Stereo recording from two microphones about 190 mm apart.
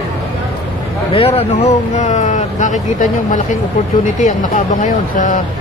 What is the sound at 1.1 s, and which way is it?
Speech, 30° left (ahead or behind).